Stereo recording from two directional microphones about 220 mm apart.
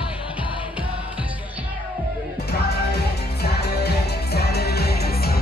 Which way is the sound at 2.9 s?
45° left (ahead or behind).